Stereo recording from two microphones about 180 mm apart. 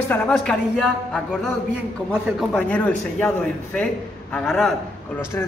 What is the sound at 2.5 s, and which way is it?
A man's voice, 5° left (ahead or behind).